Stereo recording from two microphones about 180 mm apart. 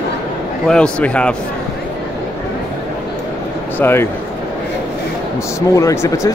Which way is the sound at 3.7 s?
10° left (ahead or behind).